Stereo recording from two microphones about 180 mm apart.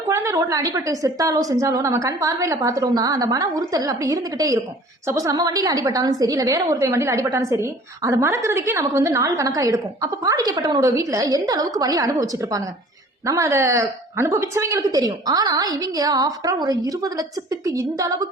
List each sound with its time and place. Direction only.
0.1 s a woman's voice: 15° right (ahead or behind)